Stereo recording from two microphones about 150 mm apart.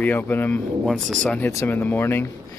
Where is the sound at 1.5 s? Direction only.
15° left (ahead or behind).